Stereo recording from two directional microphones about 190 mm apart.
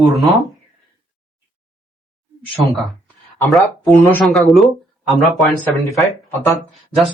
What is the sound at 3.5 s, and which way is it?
Speech, centre (ahead or behind).